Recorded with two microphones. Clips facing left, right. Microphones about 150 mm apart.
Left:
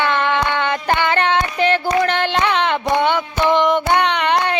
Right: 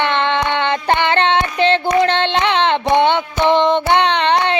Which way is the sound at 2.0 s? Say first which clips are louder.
Right 2 dB; 25° right (ahead or behind).